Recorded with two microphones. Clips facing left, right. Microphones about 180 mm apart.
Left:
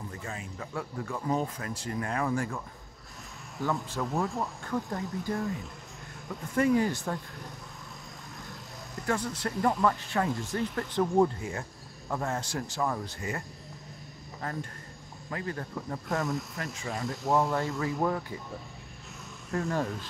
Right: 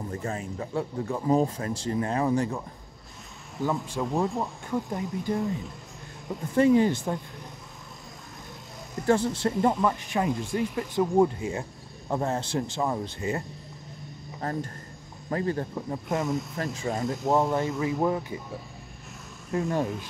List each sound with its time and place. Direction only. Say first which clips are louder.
0.1 s speech: right 7 dB; 40° right (ahead or behind); by 7.4 s 20° right (ahead or behind)
9.0 s speech: right 8 dB; 25° right (ahead or behind)
15.2 s speech: right 8 dB; 30° right (ahead or behind)
19.5 s speech: right 3 dB; 20° right (ahead or behind)